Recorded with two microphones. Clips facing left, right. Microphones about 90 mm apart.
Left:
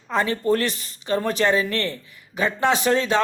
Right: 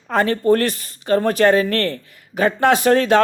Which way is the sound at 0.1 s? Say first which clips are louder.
Right 5 dB; 50° right (ahead or behind).